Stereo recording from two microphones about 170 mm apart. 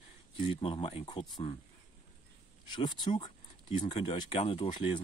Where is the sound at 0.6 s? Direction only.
30° left (ahead or behind).